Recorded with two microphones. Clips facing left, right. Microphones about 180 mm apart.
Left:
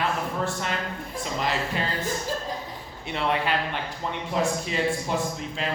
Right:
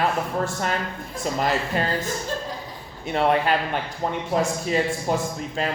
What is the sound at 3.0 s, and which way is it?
Speech, 45° right (ahead or behind).